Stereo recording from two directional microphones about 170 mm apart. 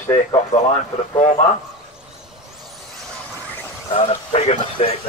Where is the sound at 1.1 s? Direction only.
40° left (ahead or behind).